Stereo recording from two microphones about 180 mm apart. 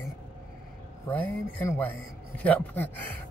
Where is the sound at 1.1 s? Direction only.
15° left (ahead or behind).